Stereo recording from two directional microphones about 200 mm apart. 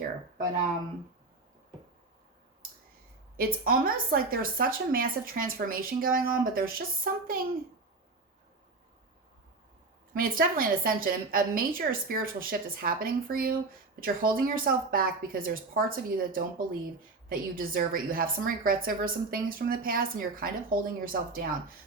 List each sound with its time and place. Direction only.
3.3 s a woman's voice: 45° right (ahead or behind)
10.2 s a woman's voice: 45° right (ahead or behind)